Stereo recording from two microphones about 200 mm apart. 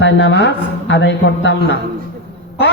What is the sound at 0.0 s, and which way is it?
Speech, 65° left (ahead or behind).